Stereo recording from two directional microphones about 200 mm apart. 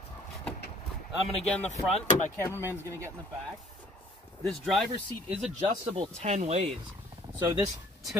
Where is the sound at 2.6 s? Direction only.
15° right (ahead or behind).